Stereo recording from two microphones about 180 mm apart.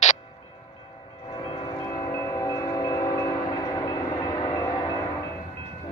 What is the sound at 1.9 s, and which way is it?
Wind chime, 20° left (ahead or behind).